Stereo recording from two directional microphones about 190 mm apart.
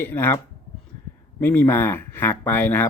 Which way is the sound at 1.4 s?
10° left (ahead or behind).